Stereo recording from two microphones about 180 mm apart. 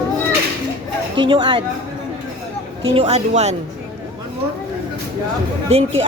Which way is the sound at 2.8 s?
30° right (ahead or behind).